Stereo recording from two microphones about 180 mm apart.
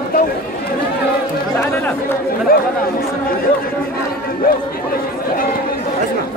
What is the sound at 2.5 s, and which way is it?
Speech, 55° left (ahead or behind).